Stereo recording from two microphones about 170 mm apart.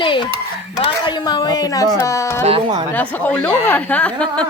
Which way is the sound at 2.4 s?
30° right (ahead or behind).